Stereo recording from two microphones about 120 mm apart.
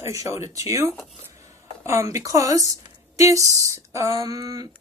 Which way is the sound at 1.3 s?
25° right (ahead or behind).